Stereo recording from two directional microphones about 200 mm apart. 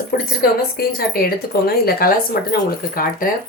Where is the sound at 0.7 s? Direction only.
50° left (ahead or behind).